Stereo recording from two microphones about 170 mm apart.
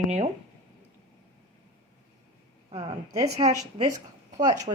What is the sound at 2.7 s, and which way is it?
Speech, 30° right (ahead or behind).